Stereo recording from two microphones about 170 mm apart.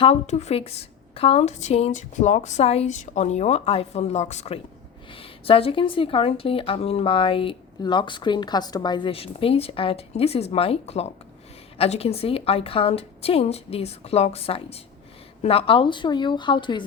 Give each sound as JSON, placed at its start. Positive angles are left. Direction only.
{"t": 0.0, "sound": "speech", "side_deg": 40}